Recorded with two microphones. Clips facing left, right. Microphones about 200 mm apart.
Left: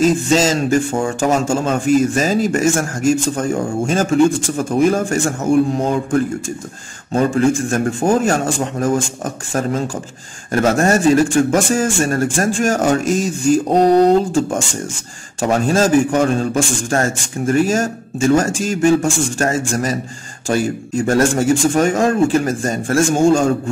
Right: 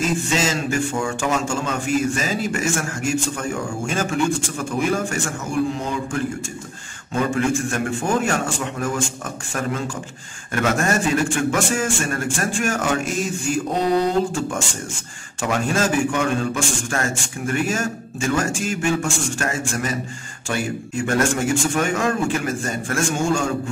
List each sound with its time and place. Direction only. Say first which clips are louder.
0.0 s a man's voice: left 8 dB; 40° left (ahead or behind)